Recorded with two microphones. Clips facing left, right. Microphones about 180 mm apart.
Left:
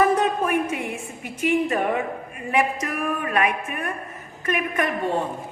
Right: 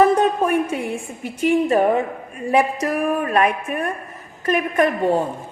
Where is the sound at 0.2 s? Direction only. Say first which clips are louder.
Right 4 dB; 30° right (ahead or behind).